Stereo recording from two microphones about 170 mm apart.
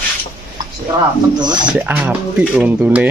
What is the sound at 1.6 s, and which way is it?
Speech, 5° right (ahead or behind).